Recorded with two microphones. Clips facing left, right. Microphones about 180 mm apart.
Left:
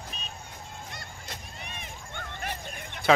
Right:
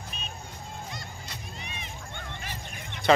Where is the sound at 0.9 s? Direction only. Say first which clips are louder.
Right 2 dB; 55° left (ahead or behind).